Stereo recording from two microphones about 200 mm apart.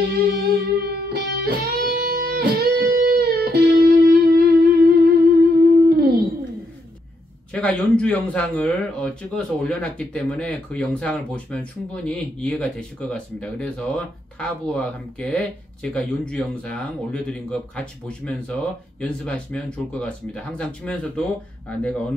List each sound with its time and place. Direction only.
0.1 s music: 50° right (ahead or behind)
7.5 s speech: 5° left (ahead or behind)